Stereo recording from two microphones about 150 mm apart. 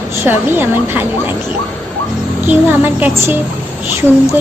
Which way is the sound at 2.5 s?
10° right (ahead or behind).